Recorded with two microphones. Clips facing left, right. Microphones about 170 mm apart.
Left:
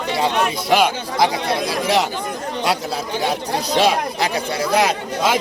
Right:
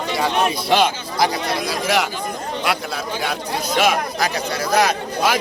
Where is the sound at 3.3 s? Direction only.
30° left (ahead or behind).